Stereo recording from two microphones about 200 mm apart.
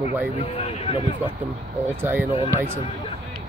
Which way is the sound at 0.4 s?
30° left (ahead or behind).